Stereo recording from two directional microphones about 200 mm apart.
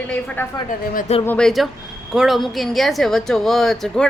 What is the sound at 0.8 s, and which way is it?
Speech, 40° left (ahead or behind).